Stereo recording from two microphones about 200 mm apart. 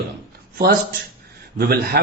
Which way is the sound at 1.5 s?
50° right (ahead or behind).